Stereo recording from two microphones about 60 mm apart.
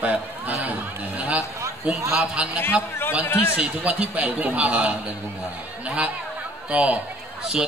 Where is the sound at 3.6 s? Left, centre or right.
Right.